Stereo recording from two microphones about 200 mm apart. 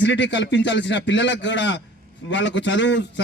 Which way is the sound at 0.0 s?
65° left (ahead or behind).